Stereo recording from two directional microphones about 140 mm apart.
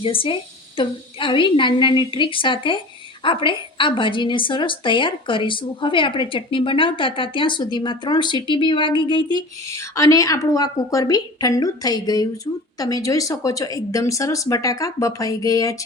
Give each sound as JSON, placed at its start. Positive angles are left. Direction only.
{"t": 0.0, "sound": "a woman's voice", "side_deg": 40}
{"t": 9.6, "sound": "a woman's voice", "side_deg": 20}